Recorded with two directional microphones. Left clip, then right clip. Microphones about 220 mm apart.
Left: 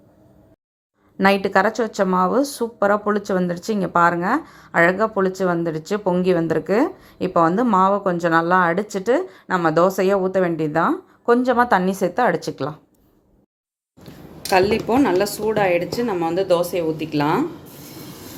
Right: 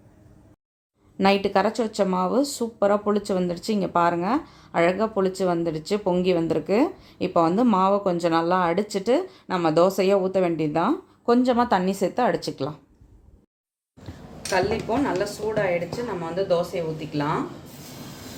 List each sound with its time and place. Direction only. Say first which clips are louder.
1.2 s a woman's voice: left 4 dB; 15° left (ahead or behind)
14.5 s speech: left 6 dB; 40° left (ahead or behind)